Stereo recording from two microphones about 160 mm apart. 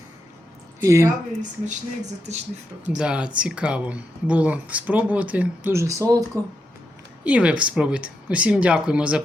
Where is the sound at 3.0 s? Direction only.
5° right (ahead or behind).